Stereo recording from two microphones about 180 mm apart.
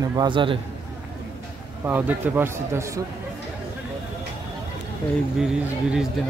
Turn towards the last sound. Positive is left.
turn(degrees=-5)  # may be behind; listen again after turning